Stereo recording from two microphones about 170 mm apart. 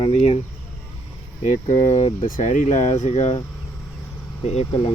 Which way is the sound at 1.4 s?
45° left (ahead or behind).